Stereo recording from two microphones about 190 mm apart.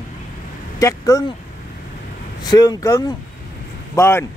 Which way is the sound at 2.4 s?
20° left (ahead or behind).